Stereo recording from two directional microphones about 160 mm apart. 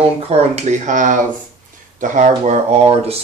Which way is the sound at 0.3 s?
40° right (ahead or behind).